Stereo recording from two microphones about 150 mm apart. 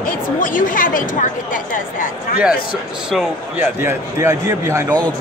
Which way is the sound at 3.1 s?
10° right (ahead or behind).